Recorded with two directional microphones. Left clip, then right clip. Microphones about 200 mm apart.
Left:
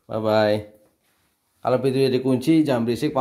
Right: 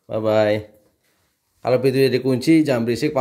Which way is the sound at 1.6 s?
10° right (ahead or behind).